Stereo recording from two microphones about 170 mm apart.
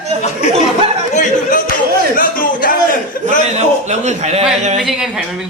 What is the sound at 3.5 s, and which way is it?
Speech, 40° right (ahead or behind).